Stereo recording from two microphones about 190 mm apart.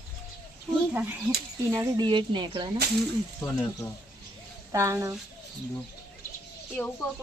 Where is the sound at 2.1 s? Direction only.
25° right (ahead or behind).